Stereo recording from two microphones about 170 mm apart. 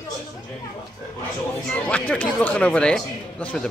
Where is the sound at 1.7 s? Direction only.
10° left (ahead or behind).